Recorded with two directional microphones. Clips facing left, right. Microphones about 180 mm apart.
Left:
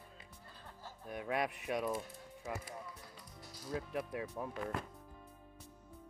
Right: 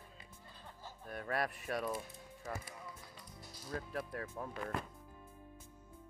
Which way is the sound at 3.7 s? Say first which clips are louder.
Left 2 dB; 10° left (ahead or behind).